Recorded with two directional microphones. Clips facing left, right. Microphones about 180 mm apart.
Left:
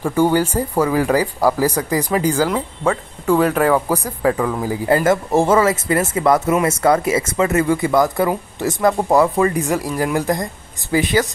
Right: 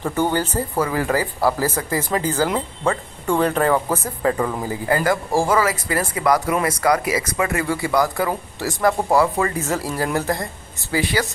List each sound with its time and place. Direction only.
0.0 s speech: 10° left (ahead or behind)
4.8 s speech: 25° left (ahead or behind)